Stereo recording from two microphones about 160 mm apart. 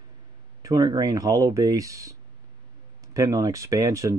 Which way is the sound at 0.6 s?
20° right (ahead or behind).